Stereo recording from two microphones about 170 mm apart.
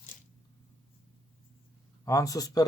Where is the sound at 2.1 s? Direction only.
20° left (ahead or behind).